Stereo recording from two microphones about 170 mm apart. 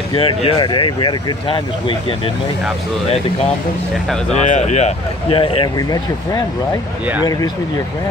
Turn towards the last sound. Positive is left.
turn(degrees=20)  # may be behind; listen again after turning